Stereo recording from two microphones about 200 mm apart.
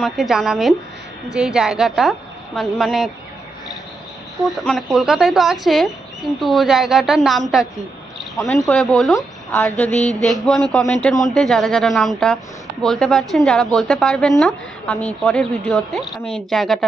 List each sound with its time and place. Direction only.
0.0 s speech: centre (ahead or behind)
4.5 s speech: centre (ahead or behind)
8.6 s speech: 5° left (ahead or behind)